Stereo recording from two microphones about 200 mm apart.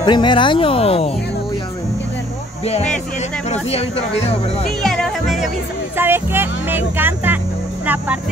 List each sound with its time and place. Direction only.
0.0 s speech: 20° left (ahead or behind)
3.4 s speech: 35° left (ahead or behind)
4.6 s music: centre (ahead or behind)
5.9 s speech: 10° right (ahead or behind)